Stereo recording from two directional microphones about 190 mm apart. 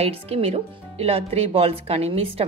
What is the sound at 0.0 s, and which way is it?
Speech, 30° right (ahead or behind).